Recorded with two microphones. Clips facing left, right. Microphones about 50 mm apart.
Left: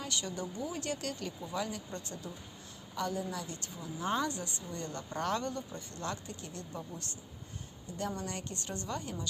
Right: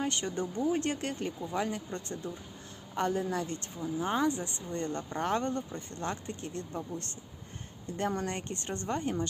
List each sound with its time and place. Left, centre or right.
0.0 s a woman's voice: right
3.9 s speech: centre; by 9.2 s right